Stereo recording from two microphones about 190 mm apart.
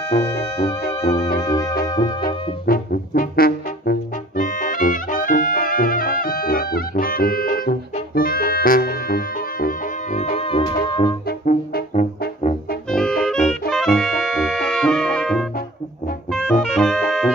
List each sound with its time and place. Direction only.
0.1 s music: 45° left (ahead or behind)
1.4 s music: 20° left (ahead or behind)
2.2 s brass instrument: 50° left (ahead or behind); by 11.1 s 25° left (ahead or behind)
11.2 s music: 55° left (ahead or behind)
12.9 s saxophone: 5° left (ahead or behind)
16.3 s music: centre (ahead or behind)